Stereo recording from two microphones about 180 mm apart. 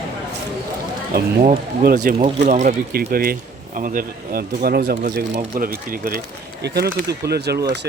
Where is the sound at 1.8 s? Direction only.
55° right (ahead or behind).